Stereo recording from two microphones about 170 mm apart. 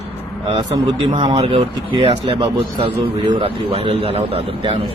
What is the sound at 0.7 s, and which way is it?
Speech, 25° right (ahead or behind).